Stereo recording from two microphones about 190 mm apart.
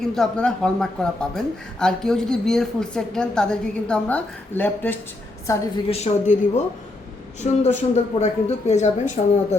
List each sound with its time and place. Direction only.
0.0 s a man's voice: 5° left (ahead or behind)
5.9 s speech: 35° left (ahead or behind)
7.4 s speech: 35° left (ahead or behind)